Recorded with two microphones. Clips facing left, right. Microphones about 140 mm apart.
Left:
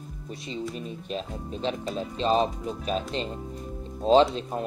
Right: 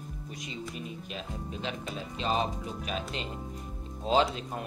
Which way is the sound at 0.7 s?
35° left (ahead or behind).